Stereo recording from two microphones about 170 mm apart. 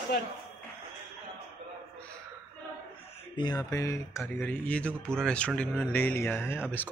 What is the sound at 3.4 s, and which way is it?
Speech, 20° left (ahead or behind).